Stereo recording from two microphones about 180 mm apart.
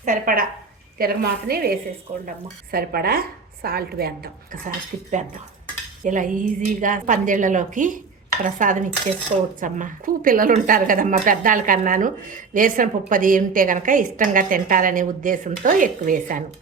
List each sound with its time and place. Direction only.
0.0 s a woman's voice: 50° right (ahead or behind)
6.0 s speech: 45° right (ahead or behind)